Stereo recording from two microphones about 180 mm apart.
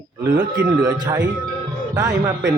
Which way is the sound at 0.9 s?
25° right (ahead or behind).